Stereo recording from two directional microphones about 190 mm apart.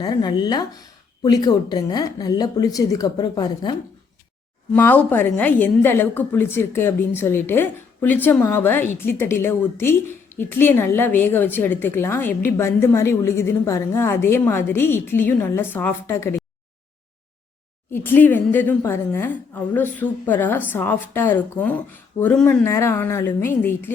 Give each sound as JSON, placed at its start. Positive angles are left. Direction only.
{"t": 0.0, "sound": "speech", "side_deg": 20}
{"t": 4.7, "sound": "a woman's voice", "side_deg": 10}
{"t": 17.9, "sound": "a woman's voice", "side_deg": 10}